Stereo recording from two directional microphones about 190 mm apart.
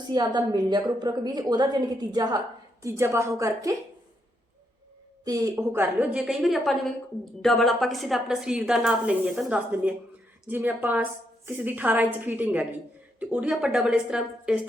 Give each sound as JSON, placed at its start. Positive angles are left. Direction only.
{"t": 0.1, "sound": "a woman's voice", "side_deg": -20}
{"t": 5.2, "sound": "a woman's voice", "side_deg": -20}